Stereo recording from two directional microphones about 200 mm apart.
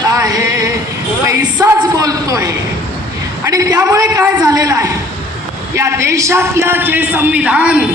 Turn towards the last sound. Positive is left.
turn(degrees=-5)  # may be behind; listen again after turning